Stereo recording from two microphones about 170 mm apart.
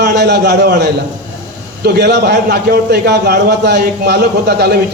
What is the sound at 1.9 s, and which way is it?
A man's voice, 75° right (ahead or behind).